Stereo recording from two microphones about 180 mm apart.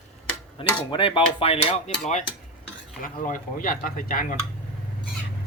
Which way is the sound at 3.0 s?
50° left (ahead or behind).